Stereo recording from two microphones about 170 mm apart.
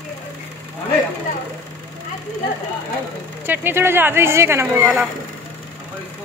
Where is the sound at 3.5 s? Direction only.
15° right (ahead or behind).